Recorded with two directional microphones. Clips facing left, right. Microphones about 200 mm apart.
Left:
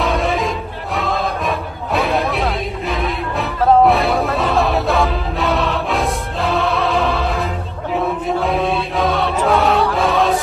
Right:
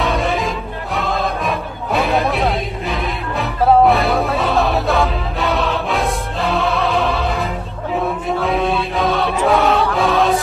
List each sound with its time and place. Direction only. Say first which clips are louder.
0.0 s music: left 1 dB; centre (ahead or behind)
8.4 s music: right 1 dB; centre (ahead or behind)